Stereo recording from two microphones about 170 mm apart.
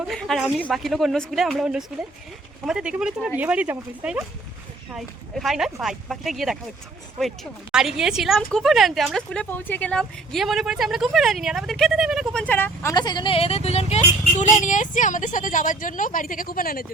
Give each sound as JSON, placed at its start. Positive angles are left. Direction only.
{"t": 0.0, "sound": "speech", "side_deg": 0}
{"t": 12.9, "sound": "speech", "side_deg": 25}